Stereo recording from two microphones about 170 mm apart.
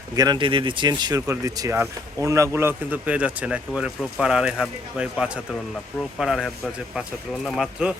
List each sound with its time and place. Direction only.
0.2 s speech: 25° right (ahead or behind); by 7.9 s 5° right (ahead or behind)